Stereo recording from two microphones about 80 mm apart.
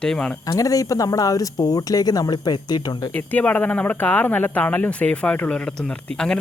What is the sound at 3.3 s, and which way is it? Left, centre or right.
Speech, left.